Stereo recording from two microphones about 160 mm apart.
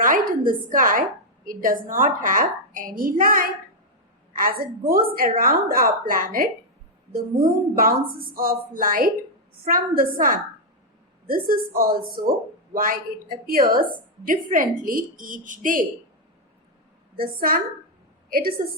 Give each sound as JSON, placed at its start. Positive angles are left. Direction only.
{"t": 0.0, "sound": "a woman's voice", "side_deg": -60}
{"t": 7.8, "sound": "a woman's voice", "side_deg": -65}
{"t": 17.2, "sound": "a woman's voice", "side_deg": -65}